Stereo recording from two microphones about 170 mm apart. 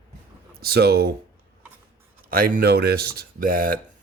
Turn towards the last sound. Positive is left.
turn(degrees=-55)  # may be behind; listen again after turning